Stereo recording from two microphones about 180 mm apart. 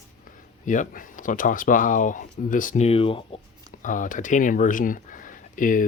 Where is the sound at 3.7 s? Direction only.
45° left (ahead or behind).